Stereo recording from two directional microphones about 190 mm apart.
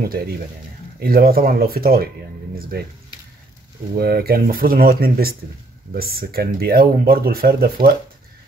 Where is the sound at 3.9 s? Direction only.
55° right (ahead or behind).